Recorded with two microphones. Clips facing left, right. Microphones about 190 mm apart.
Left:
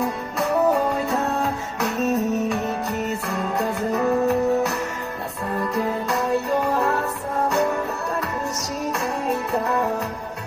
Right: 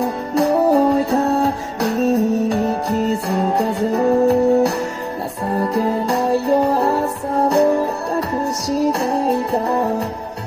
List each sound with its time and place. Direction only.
0.0 s music: 35° right (ahead or behind)